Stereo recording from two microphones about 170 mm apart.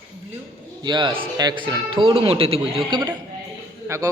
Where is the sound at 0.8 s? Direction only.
25° right (ahead or behind).